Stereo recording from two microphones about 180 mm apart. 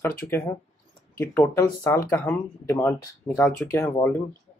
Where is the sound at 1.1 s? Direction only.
15° left (ahead or behind).